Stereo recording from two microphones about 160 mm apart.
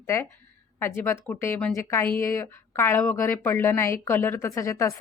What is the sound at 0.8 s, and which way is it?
A woman's voice, 15° left (ahead or behind).